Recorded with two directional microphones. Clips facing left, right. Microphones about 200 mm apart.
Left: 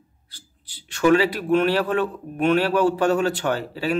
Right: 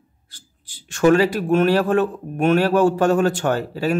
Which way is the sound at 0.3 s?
45° right (ahead or behind).